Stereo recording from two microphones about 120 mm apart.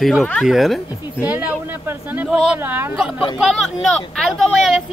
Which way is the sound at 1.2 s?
15° right (ahead or behind).